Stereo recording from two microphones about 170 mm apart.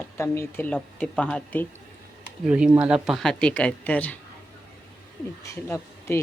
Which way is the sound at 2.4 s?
5° right (ahead or behind).